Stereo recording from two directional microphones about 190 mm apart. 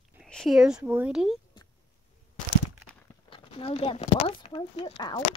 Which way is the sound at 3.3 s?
30° left (ahead or behind).